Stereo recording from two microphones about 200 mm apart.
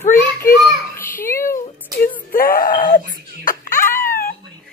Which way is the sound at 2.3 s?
45° left (ahead or behind).